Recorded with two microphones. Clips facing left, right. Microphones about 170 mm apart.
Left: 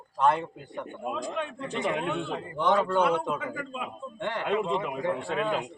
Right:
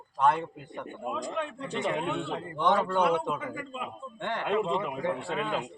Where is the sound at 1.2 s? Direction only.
5° left (ahead or behind).